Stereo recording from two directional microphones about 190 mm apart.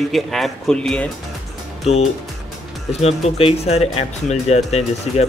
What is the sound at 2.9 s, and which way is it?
Speech, 35° left (ahead or behind).